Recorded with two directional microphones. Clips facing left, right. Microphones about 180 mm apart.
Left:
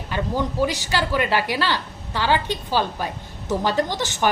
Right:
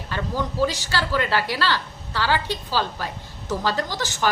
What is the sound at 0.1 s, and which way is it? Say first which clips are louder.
A woman's voice: left 3 dB; 15° left (ahead or behind).